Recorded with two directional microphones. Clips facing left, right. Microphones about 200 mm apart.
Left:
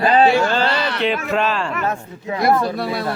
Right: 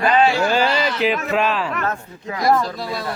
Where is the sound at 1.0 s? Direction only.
5° right (ahead or behind).